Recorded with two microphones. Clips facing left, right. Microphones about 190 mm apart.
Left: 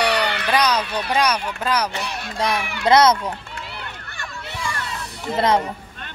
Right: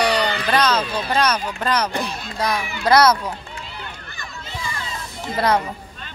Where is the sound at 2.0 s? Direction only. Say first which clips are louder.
Even; 65° left (ahead or behind).